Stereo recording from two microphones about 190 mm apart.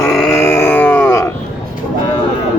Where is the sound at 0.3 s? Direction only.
15° left (ahead or behind).